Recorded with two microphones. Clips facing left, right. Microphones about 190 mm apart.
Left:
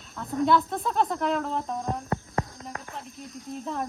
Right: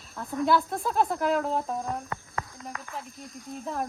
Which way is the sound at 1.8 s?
35° left (ahead or behind).